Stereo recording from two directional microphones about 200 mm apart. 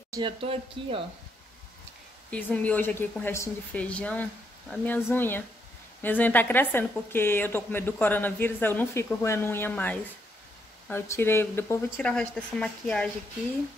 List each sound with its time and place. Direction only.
0.1 s speech: 25° right (ahead or behind)
2.3 s a woman's voice: 5° left (ahead or behind)